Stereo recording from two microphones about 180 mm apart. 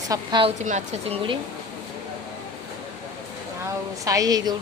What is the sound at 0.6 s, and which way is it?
Speech, 40° right (ahead or behind).